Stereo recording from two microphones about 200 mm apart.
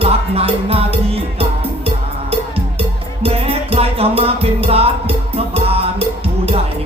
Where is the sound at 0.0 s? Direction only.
30° right (ahead or behind).